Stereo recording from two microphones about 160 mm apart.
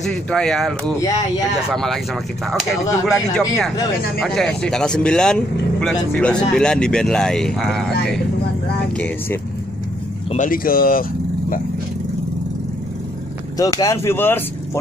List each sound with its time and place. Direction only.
0.0 s speech: 5° left (ahead or behind)
8.9 s speech: 10° left (ahead or behind)
10.3 s speech: 60° left (ahead or behind)
13.6 s speech: 20° left (ahead or behind)